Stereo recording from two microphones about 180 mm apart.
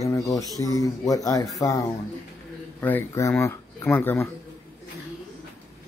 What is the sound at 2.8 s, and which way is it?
Speech, 15° left (ahead or behind).